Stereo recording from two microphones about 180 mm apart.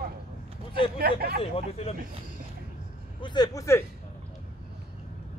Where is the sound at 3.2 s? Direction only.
25° left (ahead or behind).